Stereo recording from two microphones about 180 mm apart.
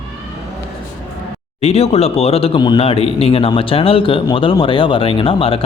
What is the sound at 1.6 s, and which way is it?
A man's voice, 35° left (ahead or behind).